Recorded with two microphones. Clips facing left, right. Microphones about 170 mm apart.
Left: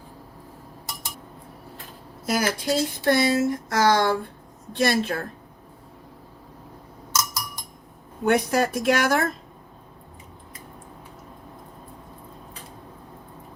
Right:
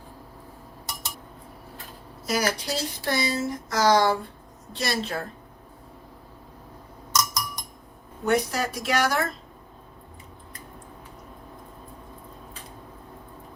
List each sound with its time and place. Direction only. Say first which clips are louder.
2.2 s speech: left 2 dB; 55° left (ahead or behind)
7.1 s a sound: right 2 dB; 5° left (ahead or behind)
8.2 s speech: left 3 dB; 55° left (ahead or behind)